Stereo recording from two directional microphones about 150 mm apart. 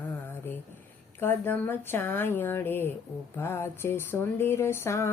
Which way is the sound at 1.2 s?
15° left (ahead or behind).